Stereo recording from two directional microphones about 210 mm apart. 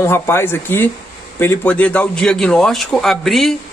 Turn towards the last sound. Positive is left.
turn(degrees=0)  # may be behind; listen again after turning